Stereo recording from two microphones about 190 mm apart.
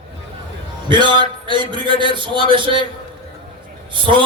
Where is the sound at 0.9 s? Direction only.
25° right (ahead or behind).